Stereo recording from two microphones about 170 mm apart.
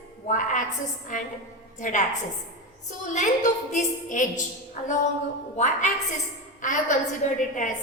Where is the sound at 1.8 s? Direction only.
45° left (ahead or behind).